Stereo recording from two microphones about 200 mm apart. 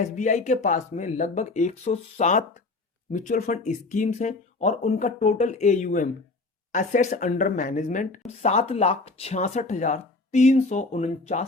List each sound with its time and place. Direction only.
0.0 s speech: 40° left (ahead or behind)